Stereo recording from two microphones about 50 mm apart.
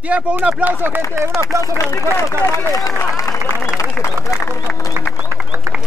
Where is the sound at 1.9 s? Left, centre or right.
Left.